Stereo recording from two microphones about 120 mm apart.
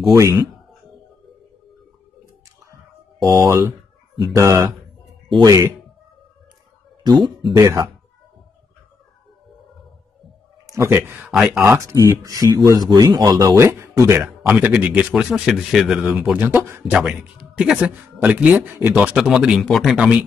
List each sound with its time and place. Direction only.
2.7 s a sound: 25° right (ahead or behind)
4.4 s speech: 30° right (ahead or behind)
7.0 s speech: 35° right (ahead or behind)
7.5 s speech: 25° right (ahead or behind)
10.7 s speech: 25° right (ahead or behind)
11.2 s a man's voice: 5° right (ahead or behind)
11.6 s a man's voice: 20° right (ahead or behind)
16.9 s a man's voice: 5° right (ahead or behind)